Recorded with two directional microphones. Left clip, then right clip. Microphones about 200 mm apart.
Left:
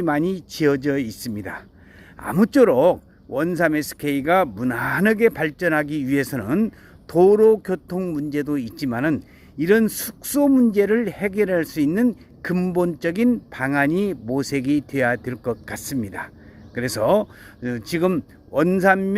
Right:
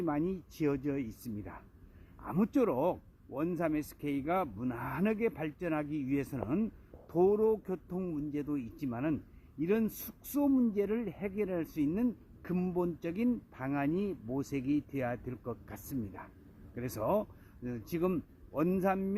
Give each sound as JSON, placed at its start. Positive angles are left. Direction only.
{"t": 0.0, "sound": "speech", "side_deg": 5}